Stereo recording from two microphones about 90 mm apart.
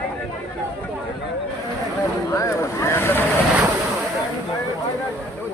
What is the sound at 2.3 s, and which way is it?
Vehicle, 35° left (ahead or behind).